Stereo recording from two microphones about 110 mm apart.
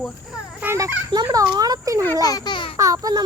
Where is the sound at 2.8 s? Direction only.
30° right (ahead or behind).